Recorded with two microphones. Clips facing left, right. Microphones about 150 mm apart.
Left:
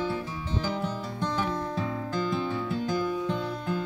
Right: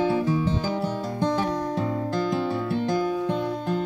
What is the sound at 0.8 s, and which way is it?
Music, 35° right (ahead or behind).